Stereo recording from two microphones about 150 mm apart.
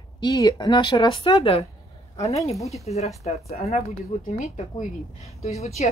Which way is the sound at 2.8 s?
45° left (ahead or behind).